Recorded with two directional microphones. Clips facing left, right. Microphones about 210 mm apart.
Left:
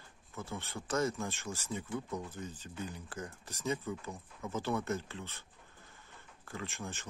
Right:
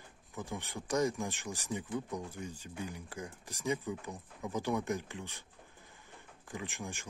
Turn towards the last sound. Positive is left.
turn(degrees=-15)  # may be behind; listen again after turning